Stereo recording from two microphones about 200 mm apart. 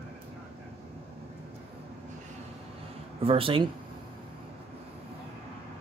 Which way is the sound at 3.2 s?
30° right (ahead or behind).